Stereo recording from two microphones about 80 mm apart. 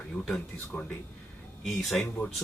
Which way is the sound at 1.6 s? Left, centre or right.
Centre.